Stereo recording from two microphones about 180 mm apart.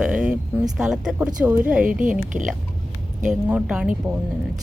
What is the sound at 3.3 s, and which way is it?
Speech, 5° right (ahead or behind).